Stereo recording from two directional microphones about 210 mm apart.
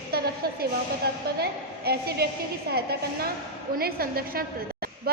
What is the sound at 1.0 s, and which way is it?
A woman's voice, 45° right (ahead or behind).